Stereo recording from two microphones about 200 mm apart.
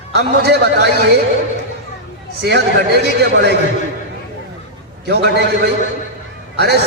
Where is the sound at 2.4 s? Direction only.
55° right (ahead or behind).